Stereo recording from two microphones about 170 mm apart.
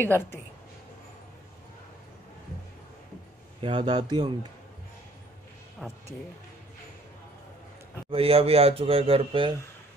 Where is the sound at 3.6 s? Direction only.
30° right (ahead or behind).